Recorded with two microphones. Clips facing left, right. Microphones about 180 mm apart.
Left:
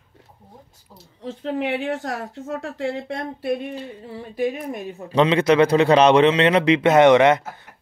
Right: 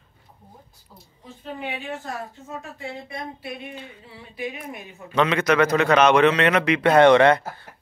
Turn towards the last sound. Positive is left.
turn(degrees=20)  # may be behind; listen again after turning